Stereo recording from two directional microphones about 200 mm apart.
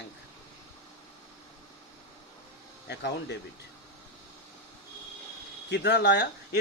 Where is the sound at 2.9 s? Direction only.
55° left (ahead or behind).